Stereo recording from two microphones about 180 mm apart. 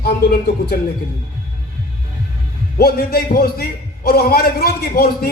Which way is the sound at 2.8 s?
60° left (ahead or behind).